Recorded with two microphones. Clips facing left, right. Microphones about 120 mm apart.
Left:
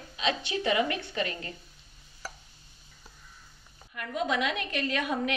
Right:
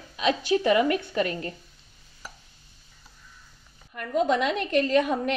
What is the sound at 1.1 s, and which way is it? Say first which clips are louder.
Speech: right 6 dB; 40° right (ahead or behind).